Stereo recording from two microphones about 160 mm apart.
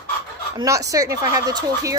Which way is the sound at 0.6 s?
20° right (ahead or behind).